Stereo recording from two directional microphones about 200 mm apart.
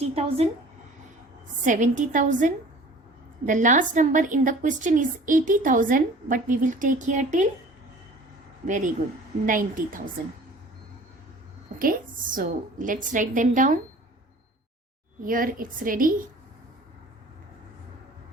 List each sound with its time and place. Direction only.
0.1 s a woman's voice: 30° right (ahead or behind)
1.6 s a woman's voice: 40° right (ahead or behind)
8.6 s a woman's voice: 40° right (ahead or behind)
11.8 s a woman's voice: 45° right (ahead or behind)
15.2 s a woman's voice: 45° right (ahead or behind)